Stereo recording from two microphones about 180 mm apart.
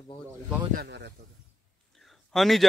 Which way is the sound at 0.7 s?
65° right (ahead or behind).